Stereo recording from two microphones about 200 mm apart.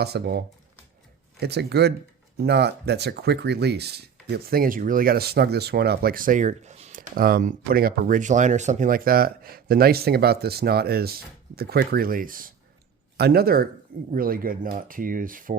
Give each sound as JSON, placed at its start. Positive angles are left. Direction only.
{"t": 0.0, "sound": "speech", "side_deg": -55}
{"t": 7.2, "sound": "speech", "side_deg": -45}